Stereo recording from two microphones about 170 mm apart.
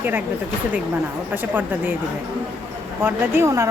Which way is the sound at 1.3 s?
10° right (ahead or behind).